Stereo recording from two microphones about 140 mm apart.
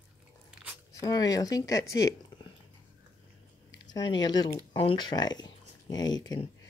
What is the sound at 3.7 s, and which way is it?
Speech, 30° left (ahead or behind).